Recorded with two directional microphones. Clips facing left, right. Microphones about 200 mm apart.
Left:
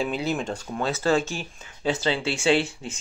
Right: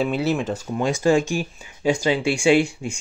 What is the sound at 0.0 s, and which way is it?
Speech, 5° right (ahead or behind).